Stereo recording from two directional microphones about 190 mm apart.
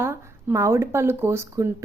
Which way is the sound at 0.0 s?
10° right (ahead or behind).